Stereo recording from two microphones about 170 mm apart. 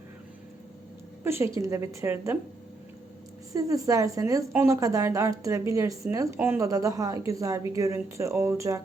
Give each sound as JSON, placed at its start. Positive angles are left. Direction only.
{"t": 1.2, "sound": "a woman's voice", "side_deg": -15}
{"t": 3.5, "sound": "a woman's voice", "side_deg": -20}